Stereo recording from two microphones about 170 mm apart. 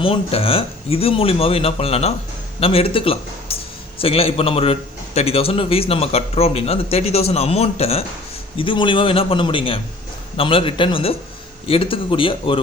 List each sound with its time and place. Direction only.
0.0 s a man's voice: 35° left (ahead or behind)